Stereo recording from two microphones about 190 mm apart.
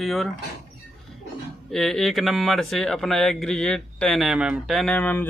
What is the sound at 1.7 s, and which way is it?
Speech, centre (ahead or behind).